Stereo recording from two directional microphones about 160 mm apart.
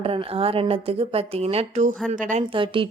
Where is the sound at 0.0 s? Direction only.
35° right (ahead or behind); by 2.4 s 55° right (ahead or behind).